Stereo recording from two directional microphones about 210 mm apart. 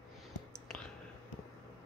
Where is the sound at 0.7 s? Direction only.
5° left (ahead or behind).